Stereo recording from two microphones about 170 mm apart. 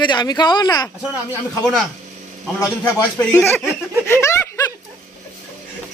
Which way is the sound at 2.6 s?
15° left (ahead or behind).